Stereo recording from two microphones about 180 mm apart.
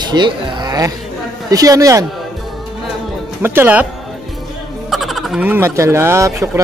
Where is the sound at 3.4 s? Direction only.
10° right (ahead or behind).